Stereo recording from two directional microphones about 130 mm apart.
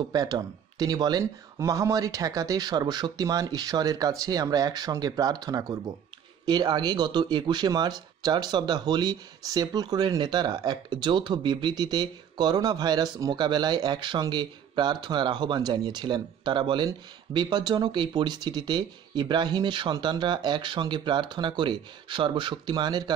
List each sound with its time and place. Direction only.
0.1 s speech: 30° right (ahead or behind)